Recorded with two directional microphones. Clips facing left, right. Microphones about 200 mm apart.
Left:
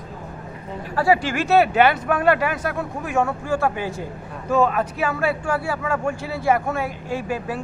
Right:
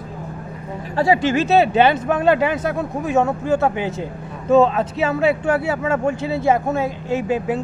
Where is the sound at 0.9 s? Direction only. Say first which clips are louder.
Right 3 dB; 20° right (ahead or behind).